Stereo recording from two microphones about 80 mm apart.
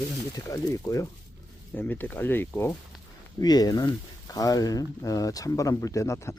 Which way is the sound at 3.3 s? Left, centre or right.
Left.